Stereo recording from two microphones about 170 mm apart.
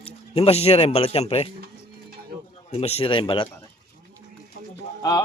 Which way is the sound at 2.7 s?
35° left (ahead or behind).